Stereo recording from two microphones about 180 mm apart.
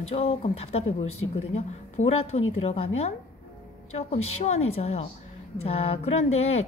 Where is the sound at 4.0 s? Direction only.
35° left (ahead or behind).